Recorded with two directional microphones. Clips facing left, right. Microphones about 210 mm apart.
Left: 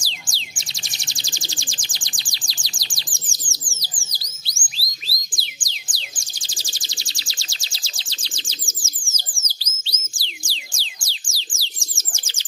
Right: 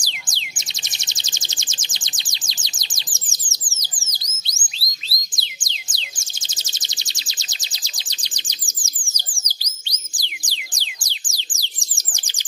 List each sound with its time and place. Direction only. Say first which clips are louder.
0.0 s bird: even; 20° right (ahead or behind)